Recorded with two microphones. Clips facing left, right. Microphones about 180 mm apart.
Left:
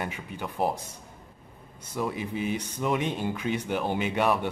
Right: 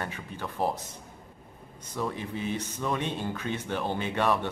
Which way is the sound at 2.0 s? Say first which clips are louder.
Left 2 dB; 10° left (ahead or behind).